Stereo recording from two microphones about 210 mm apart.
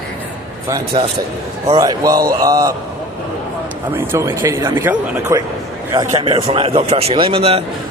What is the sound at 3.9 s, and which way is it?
A man's voice, 10° right (ahead or behind).